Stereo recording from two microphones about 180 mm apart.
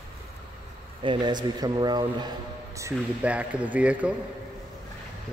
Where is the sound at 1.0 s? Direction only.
25° right (ahead or behind).